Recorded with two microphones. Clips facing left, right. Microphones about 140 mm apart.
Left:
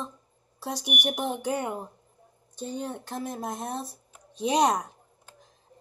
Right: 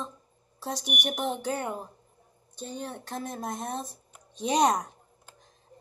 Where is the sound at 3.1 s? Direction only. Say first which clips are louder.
Left 1 dB; 5° left (ahead or behind).